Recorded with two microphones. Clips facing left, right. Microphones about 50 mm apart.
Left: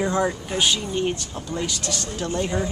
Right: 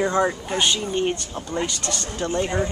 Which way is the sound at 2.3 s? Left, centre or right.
Centre.